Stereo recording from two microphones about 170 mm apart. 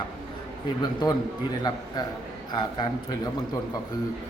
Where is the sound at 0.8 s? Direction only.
25° left (ahead or behind).